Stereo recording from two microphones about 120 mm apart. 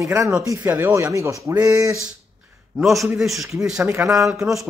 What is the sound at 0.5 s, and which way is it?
Speech, 15° right (ahead or behind).